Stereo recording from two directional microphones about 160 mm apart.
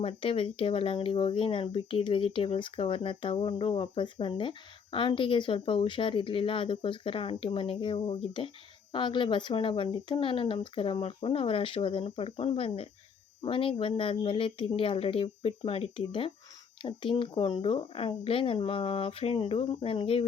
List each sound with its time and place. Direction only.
0.0 s speech: 35° left (ahead or behind)